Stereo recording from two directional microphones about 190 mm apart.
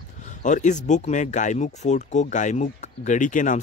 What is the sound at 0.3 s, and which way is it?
Speech, 40° left (ahead or behind).